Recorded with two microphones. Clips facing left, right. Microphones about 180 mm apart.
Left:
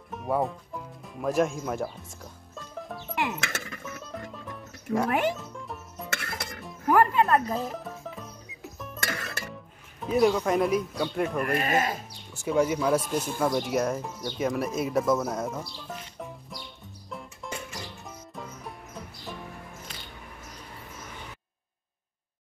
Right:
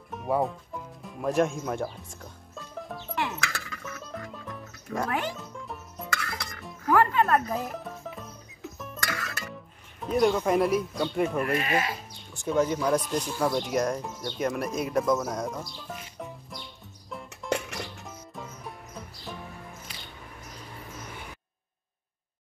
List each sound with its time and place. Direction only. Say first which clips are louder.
0.1 s speech: right 1 dB; centre (ahead or behind)
2.5 s music: even; centre (ahead or behind)
3.2 s music: left 1 dB; 20° left (ahead or behind)
4.3 s music: even; centre (ahead or behind)
9.0 s music: left 1 dB; 25° left (ahead or behind)
10.0 s speech: left 1 dB; centre (ahead or behind)
11.5 s speech: left 1 dB; 45° left (ahead or behind)
12.4 s speech: left 1 dB; 5° left (ahead or behind)
17.5 s music: right 9 dB; 75° right (ahead or behind)
18.0 s music: even; centre (ahead or behind)